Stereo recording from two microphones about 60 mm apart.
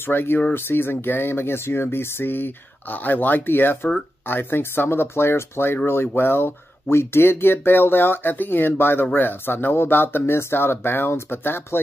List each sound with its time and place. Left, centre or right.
0.0 s speech: left